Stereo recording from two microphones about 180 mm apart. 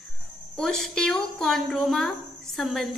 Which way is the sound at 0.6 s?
5° left (ahead or behind).